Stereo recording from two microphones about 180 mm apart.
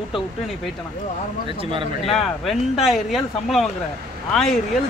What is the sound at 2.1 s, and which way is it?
Speech, centre (ahead or behind).